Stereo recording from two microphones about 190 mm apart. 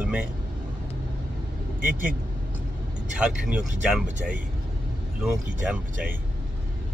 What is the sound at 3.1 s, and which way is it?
Speech, 5° right (ahead or behind).